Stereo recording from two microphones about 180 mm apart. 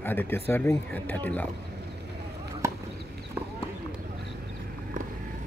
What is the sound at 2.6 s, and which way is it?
Chop, 15° right (ahead or behind).